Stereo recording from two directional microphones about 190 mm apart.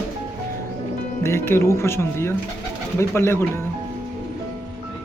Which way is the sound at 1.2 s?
15° left (ahead or behind).